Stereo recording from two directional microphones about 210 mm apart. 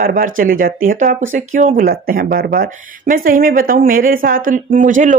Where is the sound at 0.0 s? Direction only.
40° right (ahead or behind).